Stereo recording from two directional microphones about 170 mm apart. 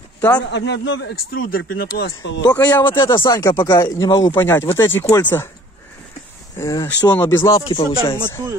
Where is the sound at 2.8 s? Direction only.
30° left (ahead or behind); by 5.4 s 15° left (ahead or behind).